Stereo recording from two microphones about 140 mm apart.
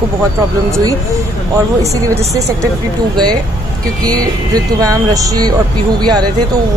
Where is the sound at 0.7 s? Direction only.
25° right (ahead or behind).